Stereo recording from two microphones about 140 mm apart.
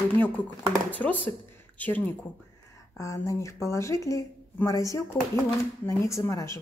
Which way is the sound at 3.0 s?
20° left (ahead or behind).